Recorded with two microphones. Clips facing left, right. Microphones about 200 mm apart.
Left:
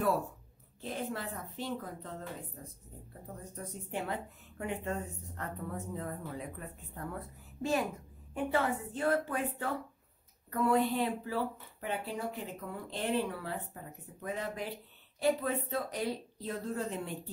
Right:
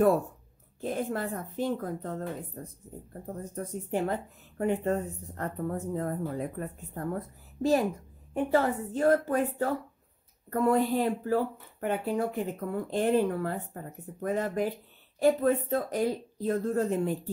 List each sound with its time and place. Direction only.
0.7 s speech: 50° right (ahead or behind)